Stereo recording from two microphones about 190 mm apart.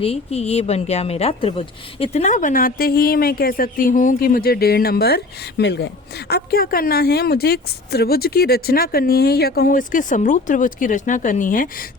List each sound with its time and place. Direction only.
0.0 s a woman's voice: 30° left (ahead or behind)